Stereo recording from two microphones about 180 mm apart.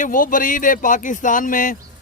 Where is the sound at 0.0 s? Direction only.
50° left (ahead or behind).